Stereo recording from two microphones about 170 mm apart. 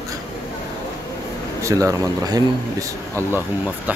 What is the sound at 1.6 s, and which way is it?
Speech, 20° right (ahead or behind).